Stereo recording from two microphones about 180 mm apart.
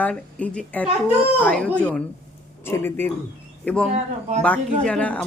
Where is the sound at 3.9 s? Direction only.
40° right (ahead or behind).